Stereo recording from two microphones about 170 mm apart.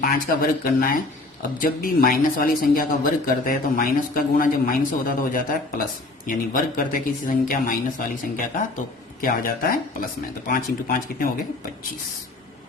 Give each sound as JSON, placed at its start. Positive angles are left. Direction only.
{"t": 0.0, "sound": "speech", "side_deg": 55}